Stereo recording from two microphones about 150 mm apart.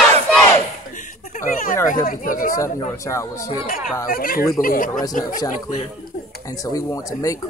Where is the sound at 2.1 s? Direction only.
65° left (ahead or behind).